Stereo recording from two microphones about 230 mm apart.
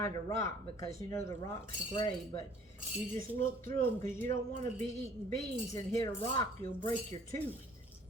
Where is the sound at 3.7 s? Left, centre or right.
Centre.